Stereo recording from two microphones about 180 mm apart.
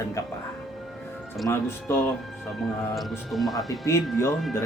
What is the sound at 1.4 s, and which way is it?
Speech, 15° left (ahead or behind).